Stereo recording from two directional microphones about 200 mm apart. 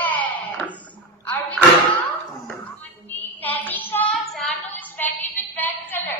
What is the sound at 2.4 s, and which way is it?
Child singing, 5° left (ahead or behind).